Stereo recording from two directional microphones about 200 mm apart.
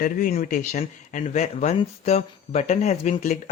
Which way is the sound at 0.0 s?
45° left (ahead or behind).